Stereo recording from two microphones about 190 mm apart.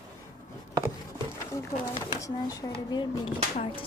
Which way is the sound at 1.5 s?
15° left (ahead or behind).